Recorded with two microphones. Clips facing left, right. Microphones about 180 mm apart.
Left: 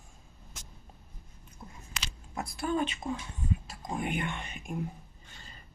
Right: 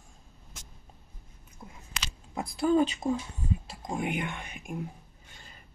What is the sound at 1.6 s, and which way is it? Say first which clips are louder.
Biting: right 1 dB; 10° right (ahead or behind).